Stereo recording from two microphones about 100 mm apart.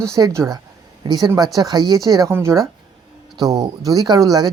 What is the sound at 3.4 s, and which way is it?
Speech, 40° right (ahead or behind).